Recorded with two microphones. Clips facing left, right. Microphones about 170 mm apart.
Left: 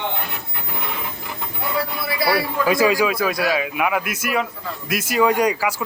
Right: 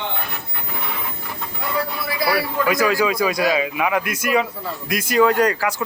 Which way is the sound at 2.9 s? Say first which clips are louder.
Even; 5° left (ahead or behind).